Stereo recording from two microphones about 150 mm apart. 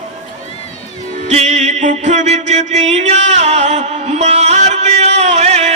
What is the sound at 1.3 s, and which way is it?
Music, 45° right (ahead or behind).